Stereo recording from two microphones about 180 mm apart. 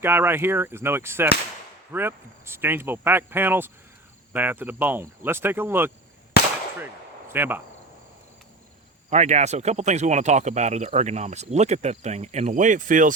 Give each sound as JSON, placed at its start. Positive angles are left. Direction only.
{"t": 0.0, "sound": "speech", "side_deg": -10}
{"t": 7.3, "sound": "speech", "side_deg": -10}
{"t": 9.0, "sound": "speech", "side_deg": -40}